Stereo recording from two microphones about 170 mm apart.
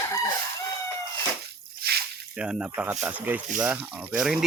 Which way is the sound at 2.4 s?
5° right (ahead or behind).